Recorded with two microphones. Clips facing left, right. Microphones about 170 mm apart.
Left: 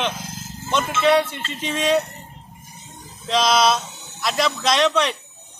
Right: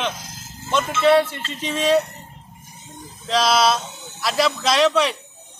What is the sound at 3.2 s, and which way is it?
A man's voice, 5° right (ahead or behind).